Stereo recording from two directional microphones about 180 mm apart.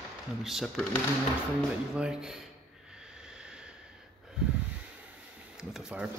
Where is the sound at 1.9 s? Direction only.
5° right (ahead or behind).